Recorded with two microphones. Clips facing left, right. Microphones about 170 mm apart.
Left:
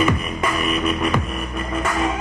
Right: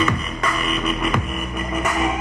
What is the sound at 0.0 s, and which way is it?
Music, 10° left (ahead or behind).